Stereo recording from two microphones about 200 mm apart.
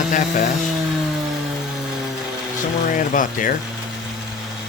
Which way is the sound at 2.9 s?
40° left (ahead or behind).